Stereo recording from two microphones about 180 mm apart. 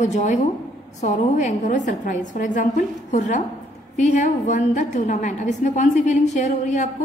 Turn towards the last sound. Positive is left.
turn(degrees=40)  # may be behind; listen again after turning